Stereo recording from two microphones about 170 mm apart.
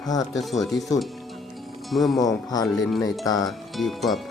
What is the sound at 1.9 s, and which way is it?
Speech, centre (ahead or behind).